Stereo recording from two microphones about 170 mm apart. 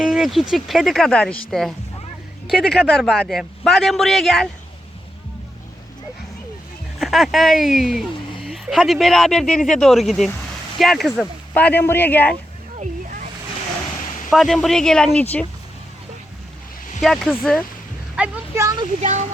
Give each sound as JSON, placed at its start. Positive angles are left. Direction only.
{"t": 0.0, "sound": "a man's voice", "side_deg": 0}
{"t": 7.0, "sound": "a man's voice", "side_deg": 0}
{"t": 14.3, "sound": "a man's voice", "side_deg": 0}
{"t": 17.0, "sound": "a man's voice", "side_deg": 0}
{"t": 18.2, "sound": "a sound", "side_deg": -15}